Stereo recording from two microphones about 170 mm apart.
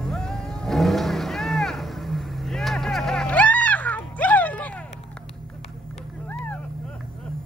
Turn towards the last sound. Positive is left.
turn(degrees=10)  # may be behind; listen again after turning